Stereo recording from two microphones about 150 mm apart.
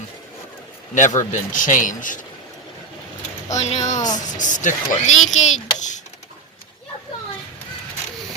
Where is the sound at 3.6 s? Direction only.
50° left (ahead or behind).